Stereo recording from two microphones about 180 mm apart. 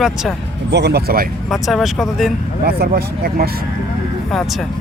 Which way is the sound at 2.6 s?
60° right (ahead or behind).